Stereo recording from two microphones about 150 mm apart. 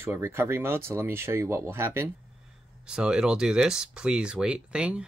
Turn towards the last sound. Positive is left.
turn(degrees=-5)  # may be behind; listen again after turning